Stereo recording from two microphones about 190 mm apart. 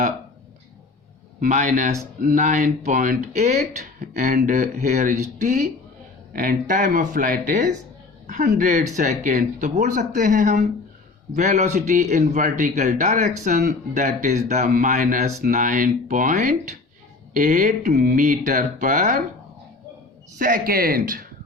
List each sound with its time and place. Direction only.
1.4 s a man's voice: 45° right (ahead or behind)
20.4 s speech: 50° right (ahead or behind)